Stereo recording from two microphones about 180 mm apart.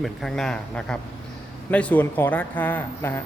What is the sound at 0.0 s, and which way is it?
Speech, centre (ahead or behind).